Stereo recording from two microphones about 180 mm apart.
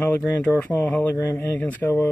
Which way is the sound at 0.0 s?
10° left (ahead or behind).